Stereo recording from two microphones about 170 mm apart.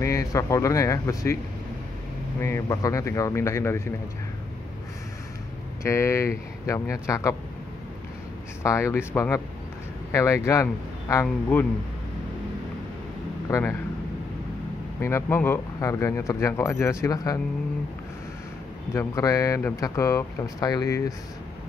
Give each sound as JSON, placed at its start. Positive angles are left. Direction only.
{"t": 0.0, "sound": "speech", "side_deg": 20}
{"t": 2.4, "sound": "speech", "side_deg": 15}
{"t": 5.9, "sound": "speech", "side_deg": 15}
{"t": 8.6, "sound": "speech", "side_deg": 15}
{"t": 13.5, "sound": "speech", "side_deg": 15}
{"t": 15.0, "sound": "speech", "side_deg": 15}
{"t": 18.9, "sound": "speech", "side_deg": 20}